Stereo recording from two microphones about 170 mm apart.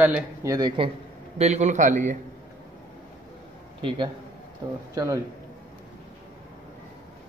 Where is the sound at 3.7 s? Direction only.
30° right (ahead or behind).